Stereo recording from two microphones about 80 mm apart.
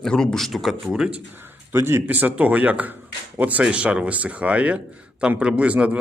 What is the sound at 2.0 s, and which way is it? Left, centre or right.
Speech, right.